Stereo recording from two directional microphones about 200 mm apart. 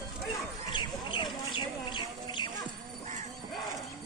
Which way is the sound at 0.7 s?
25° left (ahead or behind).